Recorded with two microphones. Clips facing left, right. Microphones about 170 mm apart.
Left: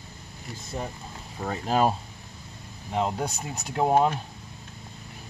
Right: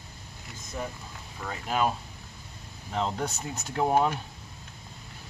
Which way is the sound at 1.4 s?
35° left (ahead or behind).